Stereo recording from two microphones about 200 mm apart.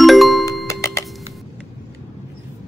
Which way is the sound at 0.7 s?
15° left (ahead or behind).